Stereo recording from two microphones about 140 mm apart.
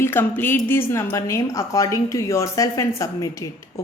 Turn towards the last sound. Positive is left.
turn(degrees=20)  # may be behind; listen again after turning